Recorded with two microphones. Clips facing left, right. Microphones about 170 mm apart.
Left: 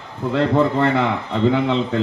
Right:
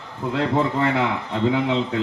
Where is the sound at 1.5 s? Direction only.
90° left.